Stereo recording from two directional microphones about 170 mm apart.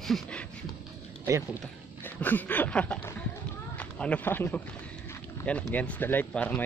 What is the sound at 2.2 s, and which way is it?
Speech, 10° left (ahead or behind).